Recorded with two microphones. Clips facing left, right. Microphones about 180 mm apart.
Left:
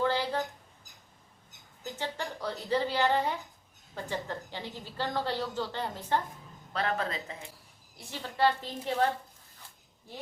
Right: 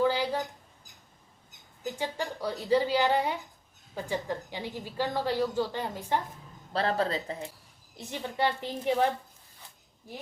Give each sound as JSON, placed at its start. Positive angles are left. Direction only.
{"t": 0.0, "sound": "a sound", "side_deg": -10}
{"t": 1.8, "sound": "a woman's voice", "side_deg": -10}
{"t": 6.7, "sound": "a man's voice", "side_deg": -35}
{"t": 7.9, "sound": "a woman's voice", "side_deg": -15}